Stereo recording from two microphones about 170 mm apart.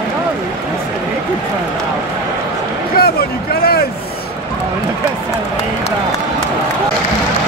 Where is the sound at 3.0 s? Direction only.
65° left (ahead or behind).